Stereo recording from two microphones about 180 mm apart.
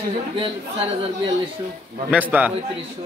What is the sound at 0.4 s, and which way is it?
Speech, 30° right (ahead or behind).